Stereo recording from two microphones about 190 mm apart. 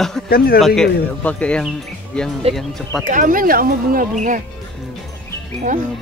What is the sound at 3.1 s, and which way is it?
Speech, 45° right (ahead or behind).